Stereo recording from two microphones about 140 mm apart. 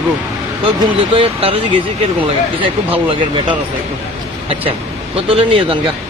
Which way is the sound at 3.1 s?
35° right (ahead or behind).